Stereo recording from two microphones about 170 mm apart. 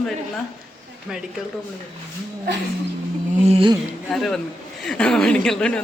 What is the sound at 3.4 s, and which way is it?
Speech, 35° right (ahead or behind).